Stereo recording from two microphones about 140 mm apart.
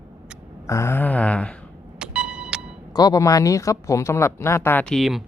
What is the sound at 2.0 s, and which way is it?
Music, 5° right (ahead or behind).